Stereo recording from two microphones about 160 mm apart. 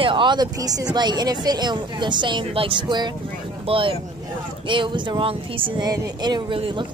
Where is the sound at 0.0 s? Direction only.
30° right (ahead or behind).